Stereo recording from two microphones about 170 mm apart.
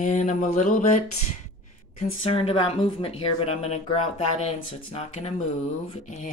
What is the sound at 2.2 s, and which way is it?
Speech, 35° left (ahead or behind).